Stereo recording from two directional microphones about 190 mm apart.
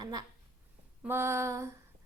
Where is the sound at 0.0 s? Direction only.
20° right (ahead or behind).